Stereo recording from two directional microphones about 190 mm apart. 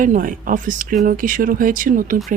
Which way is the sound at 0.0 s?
45° right (ahead or behind).